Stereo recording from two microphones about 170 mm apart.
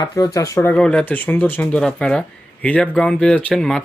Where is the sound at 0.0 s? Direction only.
20° left (ahead or behind).